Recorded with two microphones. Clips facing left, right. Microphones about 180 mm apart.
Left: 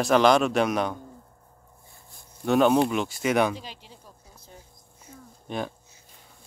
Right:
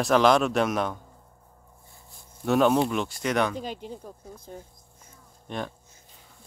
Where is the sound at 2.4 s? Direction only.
Centre (ahead or behind).